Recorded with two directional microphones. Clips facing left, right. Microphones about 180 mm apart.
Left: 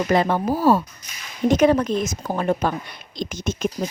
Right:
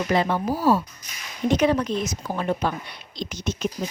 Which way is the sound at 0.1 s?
50° left (ahead or behind).